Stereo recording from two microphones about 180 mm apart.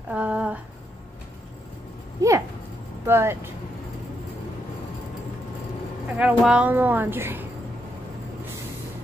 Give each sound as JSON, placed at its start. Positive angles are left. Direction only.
{"t": 0.1, "sound": "speech", "side_deg": -5}
{"t": 2.2, "sound": "a sound", "side_deg": -20}
{"t": 3.1, "sound": "speech", "side_deg": -15}
{"t": 6.1, "sound": "speech", "side_deg": -5}